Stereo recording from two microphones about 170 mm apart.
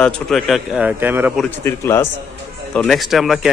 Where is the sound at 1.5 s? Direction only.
15° left (ahead or behind).